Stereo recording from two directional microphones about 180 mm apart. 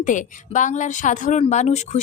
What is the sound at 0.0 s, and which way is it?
Speech, 45° left (ahead or behind).